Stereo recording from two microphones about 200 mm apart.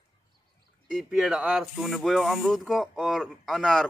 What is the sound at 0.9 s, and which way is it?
Speech, centre (ahead or behind).